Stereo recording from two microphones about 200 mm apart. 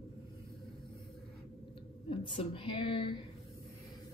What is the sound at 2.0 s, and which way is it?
A woman's voice, 25° left (ahead or behind).